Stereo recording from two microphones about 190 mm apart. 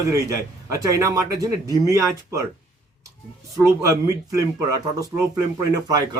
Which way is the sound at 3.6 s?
15° right (ahead or behind).